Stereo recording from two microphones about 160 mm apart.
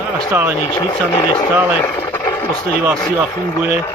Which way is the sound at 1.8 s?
15° left (ahead or behind).